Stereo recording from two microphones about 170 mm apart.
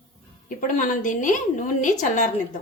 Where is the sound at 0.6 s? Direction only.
50° left (ahead or behind).